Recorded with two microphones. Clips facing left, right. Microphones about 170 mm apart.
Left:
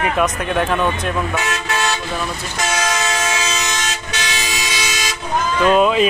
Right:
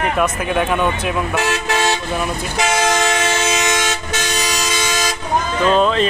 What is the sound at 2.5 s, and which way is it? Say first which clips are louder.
Speech: right 4 dB; 60° right (ahead or behind).